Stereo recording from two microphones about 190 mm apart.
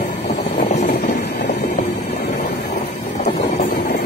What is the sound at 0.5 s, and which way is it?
Vehicle, 35° left (ahead or behind).